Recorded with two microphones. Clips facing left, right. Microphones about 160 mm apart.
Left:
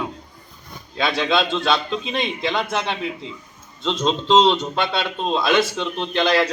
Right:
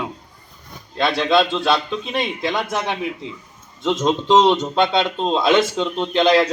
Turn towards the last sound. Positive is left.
turn(degrees=-20)  # may be behind; listen again after turning